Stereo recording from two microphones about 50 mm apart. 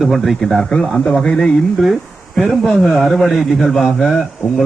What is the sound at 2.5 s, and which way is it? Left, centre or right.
A man's voice, centre.